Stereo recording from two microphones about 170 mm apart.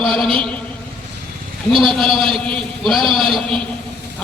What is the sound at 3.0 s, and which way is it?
Speech, 30° right (ahead or behind).